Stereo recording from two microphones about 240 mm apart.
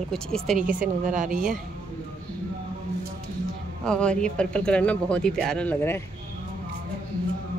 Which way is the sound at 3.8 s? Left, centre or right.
Centre.